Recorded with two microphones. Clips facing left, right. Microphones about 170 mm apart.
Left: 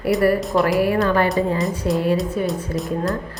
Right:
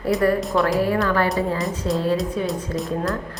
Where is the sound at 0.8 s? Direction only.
20° left (ahead or behind).